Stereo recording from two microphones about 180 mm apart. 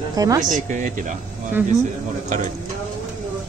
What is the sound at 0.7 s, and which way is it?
Speech, 45° right (ahead or behind).